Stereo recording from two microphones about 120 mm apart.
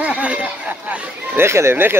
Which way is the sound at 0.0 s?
10° right (ahead or behind).